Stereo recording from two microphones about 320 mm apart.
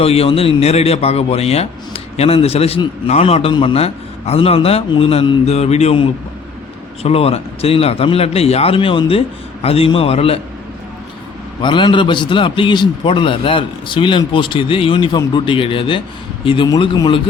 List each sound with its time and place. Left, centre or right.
0.0 s a man's voice: centre
11.6 s a man's voice: centre